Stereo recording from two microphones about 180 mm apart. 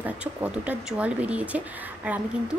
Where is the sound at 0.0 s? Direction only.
10° right (ahead or behind).